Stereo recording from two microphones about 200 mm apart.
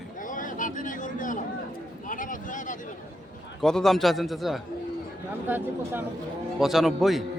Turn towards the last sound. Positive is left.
turn(degrees=0)  # may be behind; listen again after turning